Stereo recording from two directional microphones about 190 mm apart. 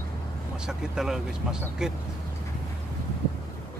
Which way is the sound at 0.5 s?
5° right (ahead or behind).